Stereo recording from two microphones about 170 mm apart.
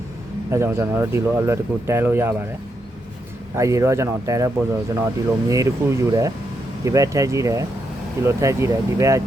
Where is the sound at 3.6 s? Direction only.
15° right (ahead or behind).